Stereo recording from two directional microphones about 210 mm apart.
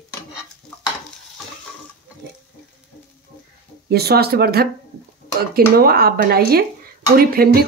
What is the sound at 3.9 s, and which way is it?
Speech, 50° right (ahead or behind).